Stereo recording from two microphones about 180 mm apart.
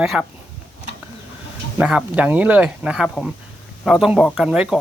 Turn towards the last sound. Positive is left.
turn(degrees=-5)  # may be behind; listen again after turning